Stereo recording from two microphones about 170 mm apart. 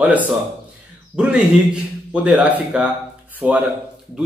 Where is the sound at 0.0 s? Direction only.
10° right (ahead or behind).